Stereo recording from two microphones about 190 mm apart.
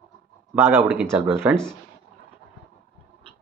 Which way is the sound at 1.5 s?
5° left (ahead or behind).